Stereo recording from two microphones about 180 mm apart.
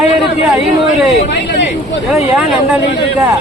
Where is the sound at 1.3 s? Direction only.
75° left (ahead or behind).